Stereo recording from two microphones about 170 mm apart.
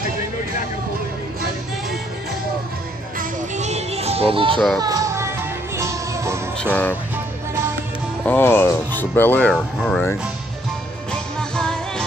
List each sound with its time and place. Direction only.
3.2 s music: 45° right (ahead or behind)
4.7 s music: 20° right (ahead or behind)
6.6 s speech: 10° left (ahead or behind)
8.3 s speech: 10° left (ahead or behind)
11.1 s music: 5° left (ahead or behind)